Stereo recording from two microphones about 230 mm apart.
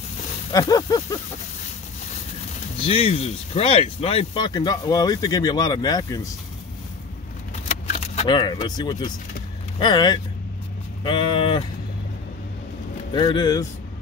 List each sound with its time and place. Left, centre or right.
0.5 s speech: centre
2.8 s speech: left
7.8 s speech: left
13.1 s speech: centre